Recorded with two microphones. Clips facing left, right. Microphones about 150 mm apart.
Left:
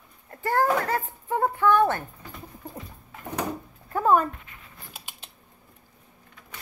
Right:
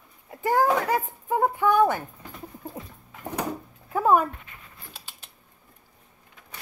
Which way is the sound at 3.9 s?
10° right (ahead or behind).